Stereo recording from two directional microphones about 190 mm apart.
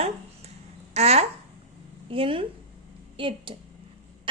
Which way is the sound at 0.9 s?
35° right (ahead or behind).